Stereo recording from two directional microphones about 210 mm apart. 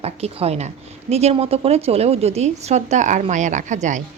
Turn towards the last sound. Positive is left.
turn(degrees=-35)  # may be behind; listen again after turning